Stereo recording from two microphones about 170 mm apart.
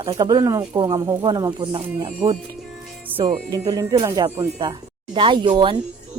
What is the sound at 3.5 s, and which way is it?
Speech, 20° right (ahead or behind).